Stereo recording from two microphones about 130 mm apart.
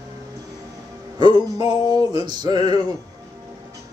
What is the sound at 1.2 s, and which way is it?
Music, 35° right (ahead or behind).